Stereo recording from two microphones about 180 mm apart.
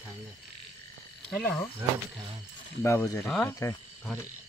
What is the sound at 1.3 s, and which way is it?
Speech, 10° left (ahead or behind).